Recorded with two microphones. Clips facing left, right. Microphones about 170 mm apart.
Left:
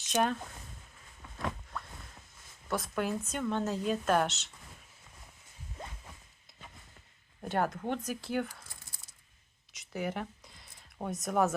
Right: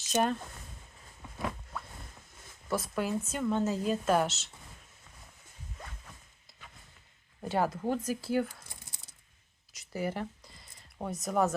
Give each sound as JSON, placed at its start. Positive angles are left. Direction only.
{"t": 0.1, "sound": "speech", "side_deg": 0}
{"t": 1.7, "sound": "a sound", "side_deg": -5}
{"t": 2.6, "sound": "speech", "side_deg": -5}
{"t": 5.8, "sound": "zipper", "side_deg": 25}
{"t": 7.5, "sound": "speech", "side_deg": -5}
{"t": 9.7, "sound": "a sound", "side_deg": 0}